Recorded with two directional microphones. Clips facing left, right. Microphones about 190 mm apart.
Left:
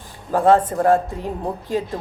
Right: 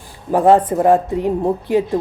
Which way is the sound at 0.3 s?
20° right (ahead or behind).